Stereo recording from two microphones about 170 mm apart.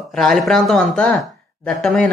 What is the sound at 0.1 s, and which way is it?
Speech, 5° left (ahead or behind).